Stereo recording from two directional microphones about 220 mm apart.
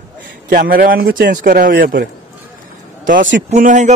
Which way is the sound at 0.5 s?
40° right (ahead or behind).